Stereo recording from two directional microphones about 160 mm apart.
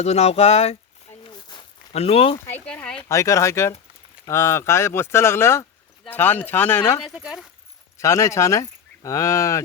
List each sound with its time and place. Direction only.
0.0 s speech: 40° left (ahead or behind)
1.3 s walk: 30° left (ahead or behind)
1.9 s speech: 40° left (ahead or behind)
2.5 s speech: 10° left (ahead or behind)
3.1 s speech: 20° left (ahead or behind)
7.0 s speech: 5° right (ahead or behind)
7.9 s speech: 20° left (ahead or behind)